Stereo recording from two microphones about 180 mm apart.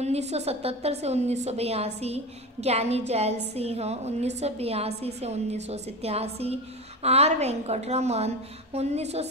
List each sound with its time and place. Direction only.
0.0 s a woman's voice: 35° right (ahead or behind)